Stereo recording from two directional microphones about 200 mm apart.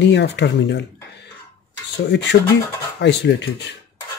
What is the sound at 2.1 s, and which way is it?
Speech, 60° left (ahead or behind).